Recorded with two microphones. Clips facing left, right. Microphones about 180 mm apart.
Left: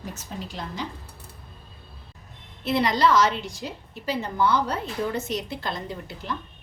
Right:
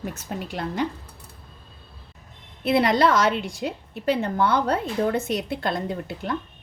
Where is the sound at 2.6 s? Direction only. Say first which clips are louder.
Right 3 dB; 60° right (ahead or behind).